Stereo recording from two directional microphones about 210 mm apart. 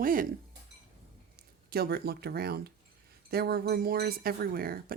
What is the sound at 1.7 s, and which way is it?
Speech, 50° right (ahead or behind).